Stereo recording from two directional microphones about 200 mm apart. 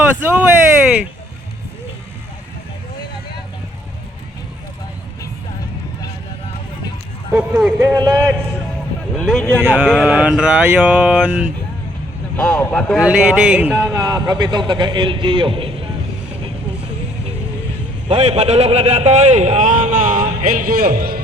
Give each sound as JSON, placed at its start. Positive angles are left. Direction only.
{"t": 0.2, "sound": "speech", "side_deg": -10}
{"t": 7.3, "sound": "speech", "side_deg": -5}
{"t": 9.1, "sound": "speech", "side_deg": 5}
{"t": 9.6, "sound": "speech", "side_deg": -5}
{"t": 12.4, "sound": "speech", "side_deg": 5}
{"t": 13.1, "sound": "speech", "side_deg": -5}
{"t": 13.9, "sound": "a man's voice", "side_deg": -20}
{"t": 18.1, "sound": "a man's voice", "side_deg": -30}